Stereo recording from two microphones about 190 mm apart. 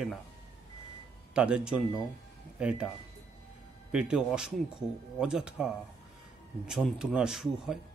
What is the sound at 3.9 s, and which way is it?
Speech, 5° right (ahead or behind).